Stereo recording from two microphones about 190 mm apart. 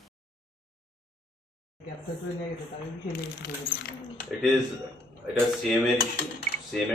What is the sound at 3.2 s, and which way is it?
Speech, 55° left (ahead or behind).